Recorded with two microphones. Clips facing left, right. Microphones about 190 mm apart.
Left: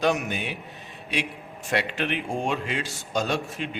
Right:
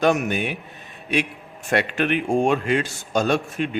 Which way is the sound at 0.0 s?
50° right (ahead or behind).